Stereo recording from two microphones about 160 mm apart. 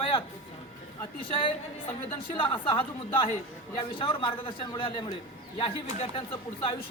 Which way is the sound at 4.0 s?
30° left (ahead or behind).